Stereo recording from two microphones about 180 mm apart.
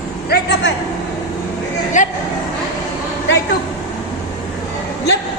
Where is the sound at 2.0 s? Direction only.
45° left (ahead or behind).